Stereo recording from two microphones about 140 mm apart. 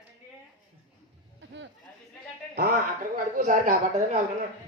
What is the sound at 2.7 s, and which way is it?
Speech, 70° right (ahead or behind).